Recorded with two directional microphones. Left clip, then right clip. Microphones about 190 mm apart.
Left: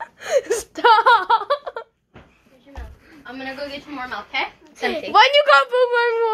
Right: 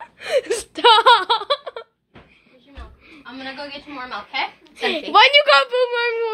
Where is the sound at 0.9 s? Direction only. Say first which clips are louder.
Right 1 dB; 30° right (ahead or behind).